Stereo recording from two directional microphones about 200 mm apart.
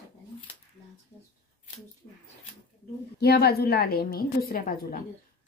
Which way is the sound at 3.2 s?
55° left (ahead or behind).